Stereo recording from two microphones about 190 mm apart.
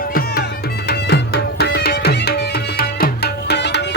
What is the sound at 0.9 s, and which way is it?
Music, 60° left (ahead or behind).